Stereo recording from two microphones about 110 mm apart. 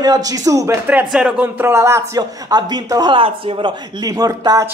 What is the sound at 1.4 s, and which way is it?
Speech, 20° right (ahead or behind).